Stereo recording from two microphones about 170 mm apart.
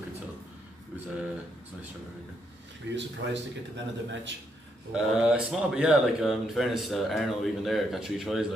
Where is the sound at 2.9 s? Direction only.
90° right.